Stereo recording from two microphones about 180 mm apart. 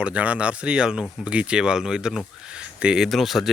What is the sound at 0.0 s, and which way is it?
Speech, 5° right (ahead or behind).